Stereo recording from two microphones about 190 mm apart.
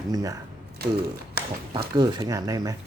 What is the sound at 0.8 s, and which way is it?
Speech, 55° right (ahead or behind).